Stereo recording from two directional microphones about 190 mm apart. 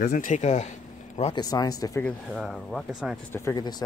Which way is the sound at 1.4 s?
20° left (ahead or behind).